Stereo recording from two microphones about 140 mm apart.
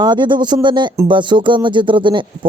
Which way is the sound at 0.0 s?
30° right (ahead or behind).